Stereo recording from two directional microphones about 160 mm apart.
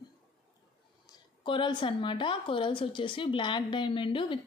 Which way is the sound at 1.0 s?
30° left (ahead or behind).